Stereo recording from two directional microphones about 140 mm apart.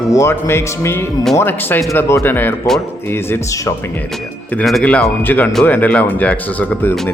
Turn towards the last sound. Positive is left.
turn(degrees=15)  # may be behind; listen again after turning